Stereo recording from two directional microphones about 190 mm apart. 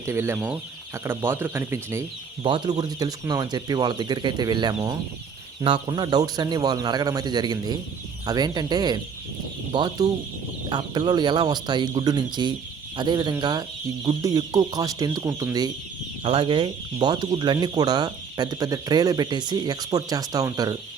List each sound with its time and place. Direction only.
0.0 s speech: 15° right (ahead or behind)